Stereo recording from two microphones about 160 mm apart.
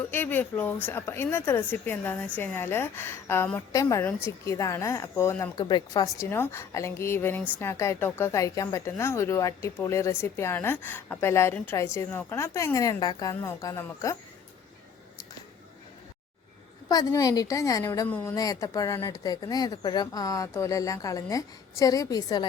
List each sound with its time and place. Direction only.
0.1 s a woman's voice: 10° left (ahead or behind)
5.6 s a woman's voice: 25° left (ahead or behind)
16.9 s speech: 25° left (ahead or behind)